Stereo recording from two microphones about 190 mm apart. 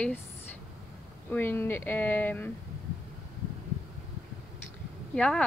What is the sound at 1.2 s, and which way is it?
Speech, 10° left (ahead or behind).